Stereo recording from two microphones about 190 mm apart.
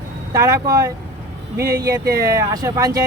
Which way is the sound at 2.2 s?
20° right (ahead or behind).